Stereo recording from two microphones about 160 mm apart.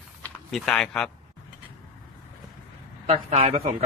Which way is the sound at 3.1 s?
40° right (ahead or behind).